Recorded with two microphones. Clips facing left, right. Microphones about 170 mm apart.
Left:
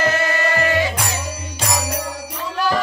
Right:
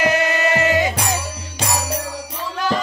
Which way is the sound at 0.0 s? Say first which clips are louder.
Right 2 dB; 15° right (ahead or behind).